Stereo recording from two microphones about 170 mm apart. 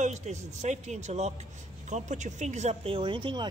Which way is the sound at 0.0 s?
40° right (ahead or behind).